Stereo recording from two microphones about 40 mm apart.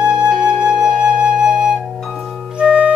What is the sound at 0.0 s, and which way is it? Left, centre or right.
Flute, right.